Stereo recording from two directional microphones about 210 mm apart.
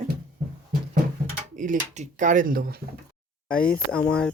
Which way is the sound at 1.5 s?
35° right (ahead or behind).